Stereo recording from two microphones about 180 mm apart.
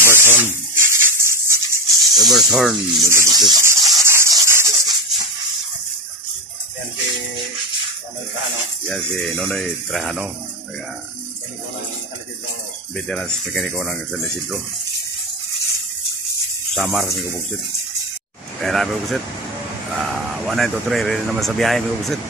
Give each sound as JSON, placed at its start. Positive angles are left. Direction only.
{"t": 0.0, "sound": "a sound", "side_deg": -15}
{"t": 2.2, "sound": "speech", "side_deg": 0}
{"t": 3.1, "sound": "rub", "side_deg": -15}
{"t": 3.4, "sound": "a sound", "side_deg": -20}
{"t": 8.8, "sound": "speech", "side_deg": 5}
{"t": 12.9, "sound": "speech", "side_deg": 0}
{"t": 16.7, "sound": "speech", "side_deg": 0}
{"t": 18.6, "sound": "speech", "side_deg": 0}